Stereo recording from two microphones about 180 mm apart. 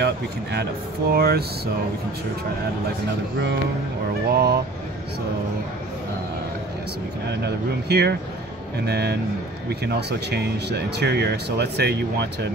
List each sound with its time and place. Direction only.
0.0 s speech: 65° right (ahead or behind)
4.3 s speech: 65° right (ahead or behind)
7.2 s speech: 65° right (ahead or behind)